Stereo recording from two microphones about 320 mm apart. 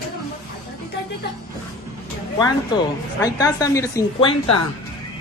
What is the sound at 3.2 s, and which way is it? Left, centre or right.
A woman's voice, centre.